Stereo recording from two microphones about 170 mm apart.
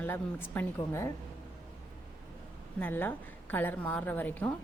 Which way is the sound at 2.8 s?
10° left (ahead or behind).